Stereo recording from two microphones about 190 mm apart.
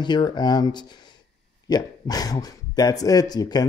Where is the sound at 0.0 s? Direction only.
25° left (ahead or behind).